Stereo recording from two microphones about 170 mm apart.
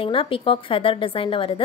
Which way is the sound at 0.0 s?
30° left (ahead or behind).